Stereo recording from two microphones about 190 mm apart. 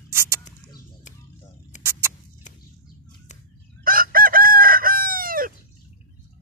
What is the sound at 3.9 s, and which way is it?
Chicken, 50° right (ahead or behind).